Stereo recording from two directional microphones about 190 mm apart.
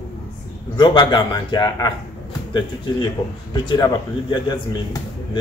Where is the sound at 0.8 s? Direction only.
25° left (ahead or behind).